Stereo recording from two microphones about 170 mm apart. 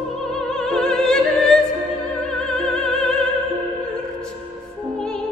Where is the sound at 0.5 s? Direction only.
Centre (ahead or behind).